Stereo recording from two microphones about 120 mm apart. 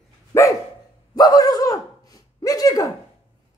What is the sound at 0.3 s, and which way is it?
Dog, 20° left (ahead or behind).